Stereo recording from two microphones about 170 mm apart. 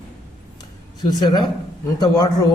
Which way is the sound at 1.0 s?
25° left (ahead or behind).